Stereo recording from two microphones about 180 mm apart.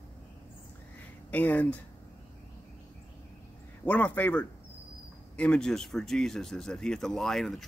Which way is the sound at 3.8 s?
10° left (ahead or behind).